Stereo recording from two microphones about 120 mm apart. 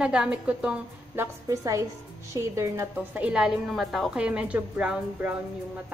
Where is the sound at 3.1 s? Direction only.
10° right (ahead or behind).